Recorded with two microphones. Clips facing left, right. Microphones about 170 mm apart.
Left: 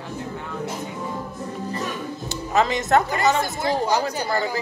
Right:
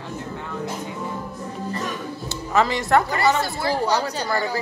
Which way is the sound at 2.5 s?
20° left (ahead or behind).